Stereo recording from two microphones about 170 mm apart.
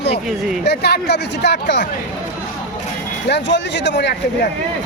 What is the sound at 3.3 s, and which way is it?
Speech, 90° left.